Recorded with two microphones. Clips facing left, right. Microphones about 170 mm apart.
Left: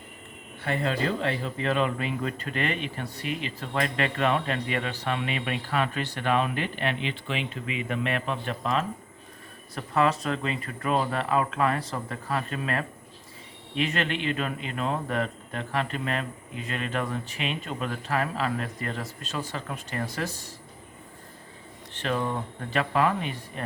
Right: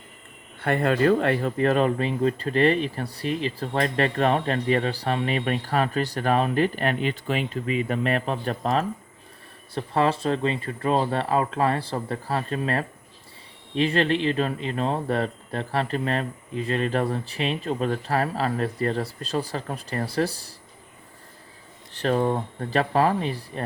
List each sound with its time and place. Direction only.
0.6 s speech: 55° right (ahead or behind); by 20.5 s 35° right (ahead or behind)
21.9 s speech: 40° right (ahead or behind)